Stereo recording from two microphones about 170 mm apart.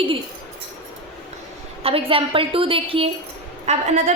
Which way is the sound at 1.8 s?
35° right (ahead or behind).